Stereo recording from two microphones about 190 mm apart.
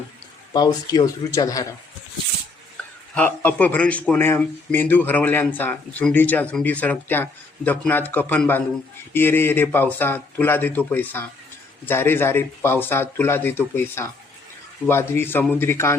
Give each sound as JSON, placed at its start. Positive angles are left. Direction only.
{"t": 0.5, "sound": "speech", "side_deg": 20}
{"t": 3.2, "sound": "speech", "side_deg": 10}